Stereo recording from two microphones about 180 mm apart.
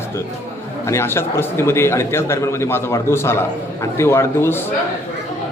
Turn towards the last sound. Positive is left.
turn(degrees=15)  # may be behind; listen again after turning